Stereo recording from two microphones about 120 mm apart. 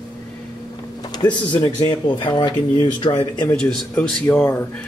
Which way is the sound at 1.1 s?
35° left (ahead or behind).